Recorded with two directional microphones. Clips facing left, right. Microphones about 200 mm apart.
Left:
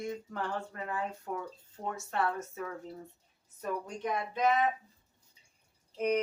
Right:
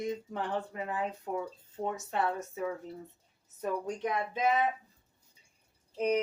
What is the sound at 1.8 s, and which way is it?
Speech, 20° right (ahead or behind).